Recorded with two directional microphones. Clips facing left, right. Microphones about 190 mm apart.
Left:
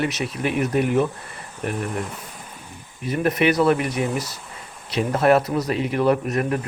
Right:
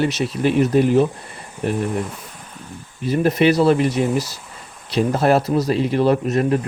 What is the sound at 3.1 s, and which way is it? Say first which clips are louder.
Speech: right 4 dB; 30° right (ahead or behind).